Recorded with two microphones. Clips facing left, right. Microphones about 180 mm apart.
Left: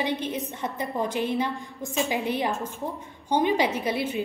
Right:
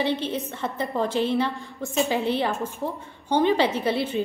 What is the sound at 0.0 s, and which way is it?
A woman's voice, 15° left (ahead or behind).